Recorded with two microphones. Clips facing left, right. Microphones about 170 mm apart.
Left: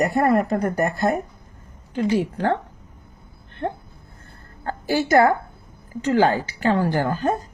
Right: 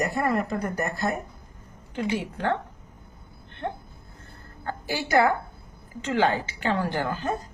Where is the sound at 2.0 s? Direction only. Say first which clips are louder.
Left 6 dB; 35° left (ahead or behind).